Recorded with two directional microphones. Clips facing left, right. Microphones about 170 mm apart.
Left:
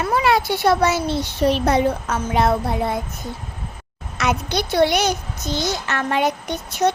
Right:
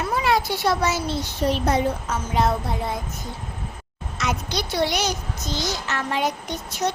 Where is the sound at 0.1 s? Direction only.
65° left (ahead or behind).